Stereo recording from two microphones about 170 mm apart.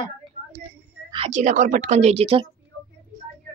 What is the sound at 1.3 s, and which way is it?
A woman's voice, 45° right (ahead or behind).